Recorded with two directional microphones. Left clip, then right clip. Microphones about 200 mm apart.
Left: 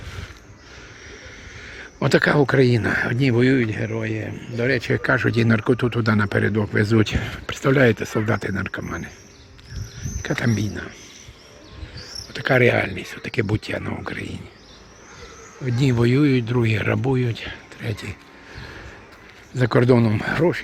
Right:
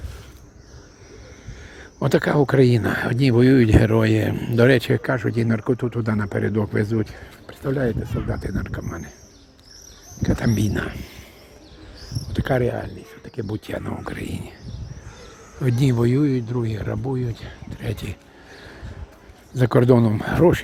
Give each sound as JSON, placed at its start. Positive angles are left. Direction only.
{"t": 1.6, "sound": "speech", "side_deg": -5}
{"t": 3.7, "sound": "speech", "side_deg": -35}
{"t": 4.7, "sound": "speech", "side_deg": -20}
{"t": 6.8, "sound": "speech", "side_deg": 5}
{"t": 10.2, "sound": "speech", "side_deg": -15}
{"t": 12.3, "sound": "speech", "side_deg": -5}
{"t": 12.6, "sound": "speech", "side_deg": 15}
{"t": 13.7, "sound": "speech", "side_deg": -5}
{"t": 15.6, "sound": "speech", "side_deg": -15}
{"t": 19.5, "sound": "speech", "side_deg": -10}